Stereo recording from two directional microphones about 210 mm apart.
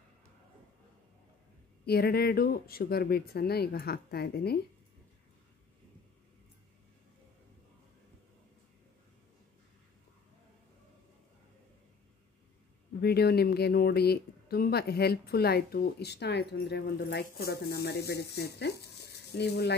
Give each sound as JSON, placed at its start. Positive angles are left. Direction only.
{"t": 1.9, "sound": "speech", "side_deg": 50}
{"t": 13.0, "sound": "speech", "side_deg": 50}